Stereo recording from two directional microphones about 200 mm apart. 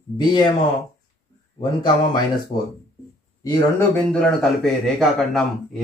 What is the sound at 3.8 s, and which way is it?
Speech, 5° left (ahead or behind).